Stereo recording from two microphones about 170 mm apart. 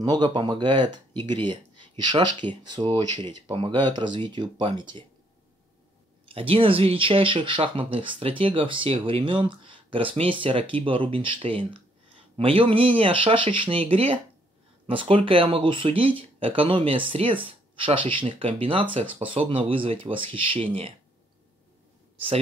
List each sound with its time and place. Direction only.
0.0 s speech: 25° right (ahead or behind)
6.2 s speech: 35° right (ahead or behind)